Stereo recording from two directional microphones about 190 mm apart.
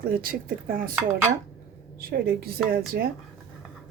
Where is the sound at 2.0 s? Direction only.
50° right (ahead or behind).